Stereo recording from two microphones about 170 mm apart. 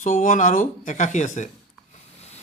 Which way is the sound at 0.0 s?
50° left (ahead or behind).